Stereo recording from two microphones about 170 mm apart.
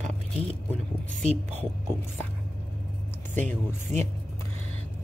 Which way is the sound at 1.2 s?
40° right (ahead or behind).